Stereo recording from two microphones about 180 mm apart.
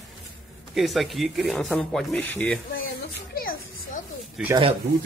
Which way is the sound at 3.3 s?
55° left (ahead or behind).